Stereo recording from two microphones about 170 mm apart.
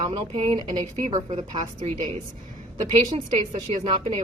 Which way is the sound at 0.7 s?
45° right (ahead or behind).